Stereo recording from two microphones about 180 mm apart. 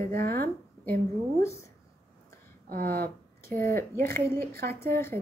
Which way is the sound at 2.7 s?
55° right (ahead or behind).